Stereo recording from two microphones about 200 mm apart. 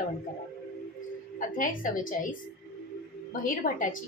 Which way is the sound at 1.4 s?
40° left (ahead or behind).